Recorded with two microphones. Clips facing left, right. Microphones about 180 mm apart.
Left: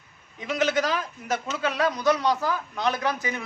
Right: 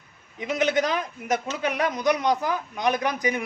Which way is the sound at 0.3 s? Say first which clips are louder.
Right 1 dB; 20° right (ahead or behind).